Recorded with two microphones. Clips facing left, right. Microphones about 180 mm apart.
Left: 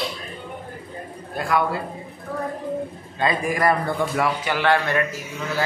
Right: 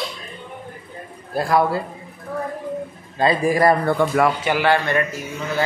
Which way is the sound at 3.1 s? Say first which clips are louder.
Right 5 dB; 35° right (ahead or behind).